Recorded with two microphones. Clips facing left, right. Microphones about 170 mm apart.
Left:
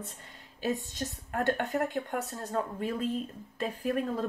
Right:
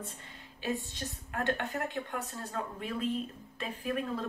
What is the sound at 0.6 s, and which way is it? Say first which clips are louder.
A woman's voice: left 3 dB; 40° left (ahead or behind).